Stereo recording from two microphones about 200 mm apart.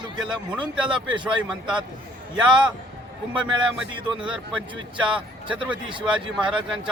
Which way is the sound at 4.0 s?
25° right (ahead or behind).